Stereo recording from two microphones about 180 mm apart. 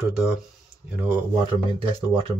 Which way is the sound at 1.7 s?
30° right (ahead or behind).